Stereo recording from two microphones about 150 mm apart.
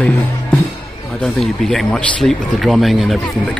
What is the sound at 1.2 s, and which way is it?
A man's voice, 5° left (ahead or behind).